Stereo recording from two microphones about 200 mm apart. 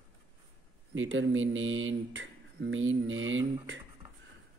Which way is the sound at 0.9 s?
70° right (ahead or behind).